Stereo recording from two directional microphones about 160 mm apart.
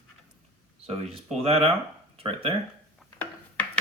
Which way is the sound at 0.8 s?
35° right (ahead or behind).